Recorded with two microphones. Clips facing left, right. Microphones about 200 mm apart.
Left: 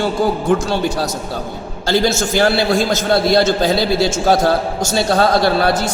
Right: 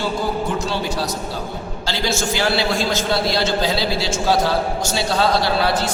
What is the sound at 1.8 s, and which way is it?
A man's voice, 50° left (ahead or behind).